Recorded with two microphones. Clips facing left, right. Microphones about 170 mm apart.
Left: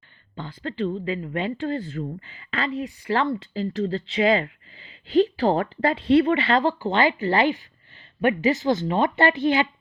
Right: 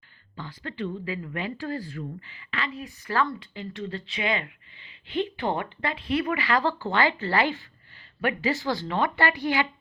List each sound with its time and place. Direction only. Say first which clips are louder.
0.3 s a woman's voice: left 6 dB; 30° left (ahead or behind)